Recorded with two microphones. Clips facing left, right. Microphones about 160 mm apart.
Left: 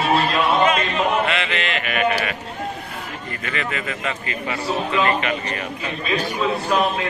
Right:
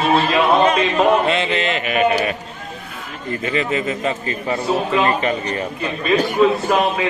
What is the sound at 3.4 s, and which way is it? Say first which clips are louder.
A man's voice: right 7 dB; 35° right (ahead or behind).